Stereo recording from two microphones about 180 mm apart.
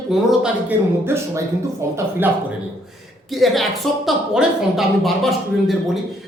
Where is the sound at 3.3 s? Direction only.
Centre (ahead or behind).